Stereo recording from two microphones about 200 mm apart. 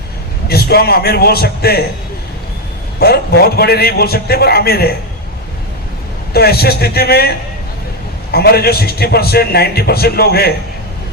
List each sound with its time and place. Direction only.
0.4 s a man's voice: 50° left (ahead or behind)
3.0 s a man's voice: 50° left (ahead or behind)
6.3 s a man's voice: 50° left (ahead or behind)